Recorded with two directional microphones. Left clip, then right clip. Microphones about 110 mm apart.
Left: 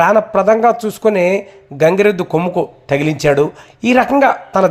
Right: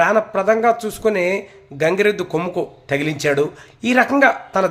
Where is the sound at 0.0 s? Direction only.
40° left (ahead or behind).